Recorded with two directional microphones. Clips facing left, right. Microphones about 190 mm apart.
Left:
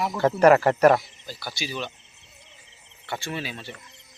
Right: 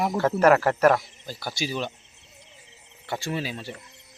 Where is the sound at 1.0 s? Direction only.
45° right (ahead or behind).